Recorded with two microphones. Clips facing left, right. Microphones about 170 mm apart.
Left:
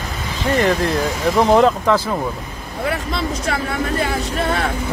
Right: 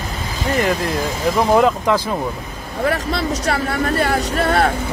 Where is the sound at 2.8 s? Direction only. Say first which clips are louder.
Right 3 dB; 40° right (ahead or behind).